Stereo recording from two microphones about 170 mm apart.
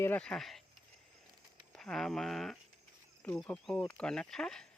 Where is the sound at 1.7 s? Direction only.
5° left (ahead or behind).